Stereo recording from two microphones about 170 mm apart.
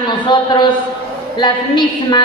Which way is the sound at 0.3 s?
25° left (ahead or behind).